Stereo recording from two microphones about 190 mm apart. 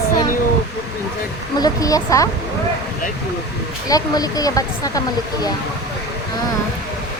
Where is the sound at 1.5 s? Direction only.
20° left (ahead or behind).